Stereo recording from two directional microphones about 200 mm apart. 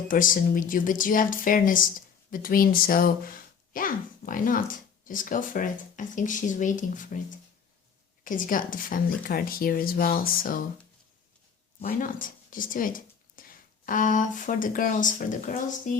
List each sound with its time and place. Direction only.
0.1 s speech: 40° left (ahead or behind)
11.8 s speech: 45° left (ahead or behind)